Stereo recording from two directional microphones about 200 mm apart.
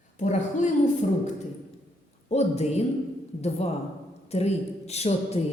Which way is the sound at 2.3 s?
35° left (ahead or behind).